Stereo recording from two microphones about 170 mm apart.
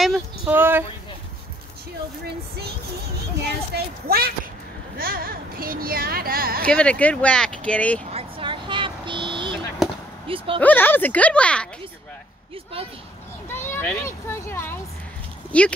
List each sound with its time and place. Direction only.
0.0 s a sound: centre (ahead or behind)
0.6 s speech: 10° right (ahead or behind)
3.7 s speech: 65° right (ahead or behind)
6.7 s speech: 5° left (ahead or behind)
8.1 s vehicle: 35° right (ahead or behind)
10.2 s speech: 30° right (ahead or behind)
10.6 s speech: 10° left (ahead or behind)
13.5 s a child's voice: 15° left (ahead or behind)